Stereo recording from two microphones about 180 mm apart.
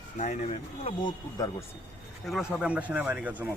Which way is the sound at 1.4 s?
20° left (ahead or behind).